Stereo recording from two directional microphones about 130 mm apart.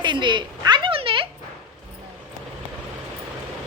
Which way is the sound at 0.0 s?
35° right (ahead or behind).